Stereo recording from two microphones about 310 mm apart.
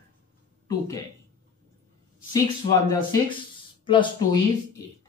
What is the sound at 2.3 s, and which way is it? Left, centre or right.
Speech, centre.